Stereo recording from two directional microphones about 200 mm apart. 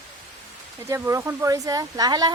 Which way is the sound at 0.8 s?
15° right (ahead or behind).